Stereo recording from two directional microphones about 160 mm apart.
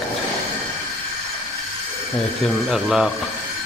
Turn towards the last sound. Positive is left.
turn(degrees=0)  # may be behind; listen again after turning